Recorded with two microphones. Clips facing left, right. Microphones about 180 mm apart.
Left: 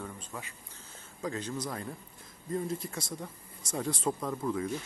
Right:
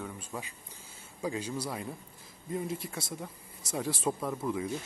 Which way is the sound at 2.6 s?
25° right (ahead or behind).